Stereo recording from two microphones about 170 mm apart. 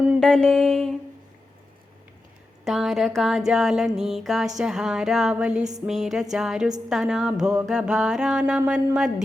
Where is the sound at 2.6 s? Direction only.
Centre (ahead or behind).